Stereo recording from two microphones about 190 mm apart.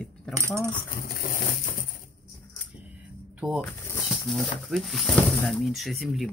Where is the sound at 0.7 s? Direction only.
45° left (ahead or behind).